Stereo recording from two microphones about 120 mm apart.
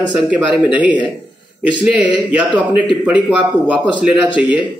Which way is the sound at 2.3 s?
10° right (ahead or behind).